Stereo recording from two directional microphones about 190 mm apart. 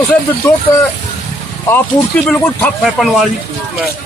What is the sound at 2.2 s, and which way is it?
Speech, 5° left (ahead or behind).